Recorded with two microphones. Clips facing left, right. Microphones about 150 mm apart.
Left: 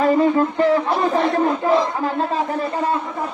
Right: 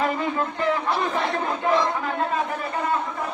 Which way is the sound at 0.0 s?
35° left (ahead or behind).